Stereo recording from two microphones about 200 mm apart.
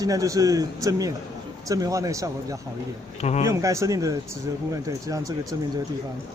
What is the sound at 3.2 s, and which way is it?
Speech, 35° left (ahead or behind).